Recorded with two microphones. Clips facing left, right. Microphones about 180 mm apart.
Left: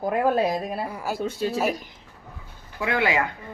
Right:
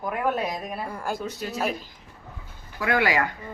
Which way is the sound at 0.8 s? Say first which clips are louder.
Left 1 dB; 5° left (ahead or behind).